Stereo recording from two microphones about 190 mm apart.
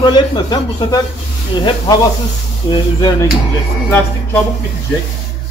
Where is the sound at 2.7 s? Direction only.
20° left (ahead or behind).